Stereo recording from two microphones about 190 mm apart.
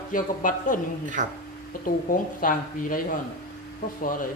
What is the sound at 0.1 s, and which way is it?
Speech, 45° left (ahead or behind).